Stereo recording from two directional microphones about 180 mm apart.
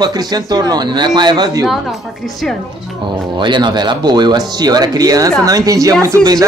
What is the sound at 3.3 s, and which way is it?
Speech, 25° right (ahead or behind).